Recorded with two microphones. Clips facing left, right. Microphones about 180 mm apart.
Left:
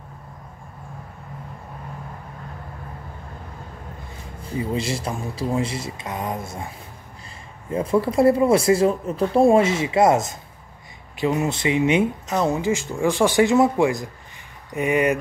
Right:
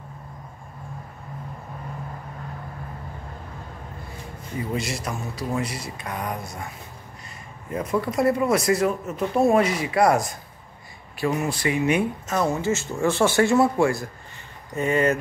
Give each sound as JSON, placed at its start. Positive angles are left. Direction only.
{"t": 4.4, "sound": "speech", "side_deg": 30}
{"t": 7.7, "sound": "speech", "side_deg": 30}